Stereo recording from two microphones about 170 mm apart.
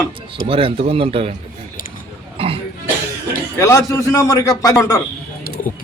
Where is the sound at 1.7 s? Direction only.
55° left (ahead or behind).